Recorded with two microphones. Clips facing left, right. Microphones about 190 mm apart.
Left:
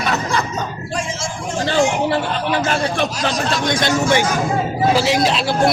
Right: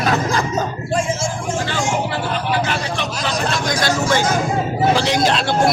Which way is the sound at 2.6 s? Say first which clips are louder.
Left 4 dB; 45° left (ahead or behind).